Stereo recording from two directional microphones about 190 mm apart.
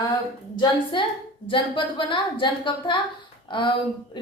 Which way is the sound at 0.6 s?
25° left (ahead or behind).